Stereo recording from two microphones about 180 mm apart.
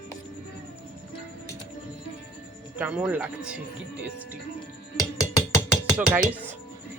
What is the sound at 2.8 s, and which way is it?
Speech, 5° right (ahead or behind).